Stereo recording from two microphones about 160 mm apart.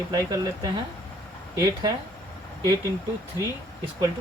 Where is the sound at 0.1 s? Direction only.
20° right (ahead or behind).